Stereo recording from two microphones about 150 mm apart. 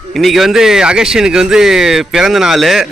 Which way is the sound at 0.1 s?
Centre (ahead or behind).